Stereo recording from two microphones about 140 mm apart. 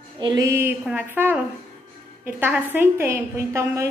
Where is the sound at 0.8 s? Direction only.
10° right (ahead or behind).